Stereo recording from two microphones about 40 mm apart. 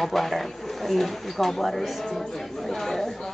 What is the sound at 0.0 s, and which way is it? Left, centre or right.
Speech, centre.